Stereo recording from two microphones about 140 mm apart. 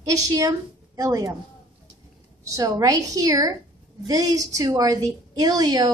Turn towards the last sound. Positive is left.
turn(degrees=-30)  # may be behind; listen again after turning